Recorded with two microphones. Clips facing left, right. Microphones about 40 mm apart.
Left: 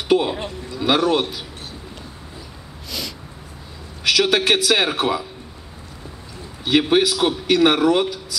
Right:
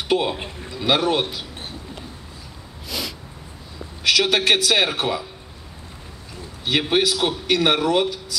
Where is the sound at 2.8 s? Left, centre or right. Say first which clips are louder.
Right 1 dB; centre.